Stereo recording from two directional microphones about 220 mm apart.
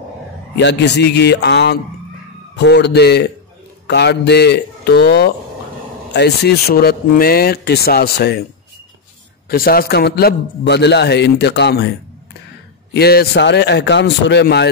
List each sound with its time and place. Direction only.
0.6 s a man's voice: 50° left (ahead or behind)
9.5 s a man's voice: 45° left (ahead or behind)
12.9 s a man's voice: 45° left (ahead or behind)